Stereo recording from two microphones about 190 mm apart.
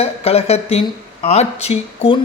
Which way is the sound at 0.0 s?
30° left (ahead or behind).